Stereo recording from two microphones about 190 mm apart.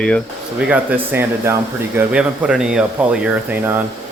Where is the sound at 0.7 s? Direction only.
10° right (ahead or behind).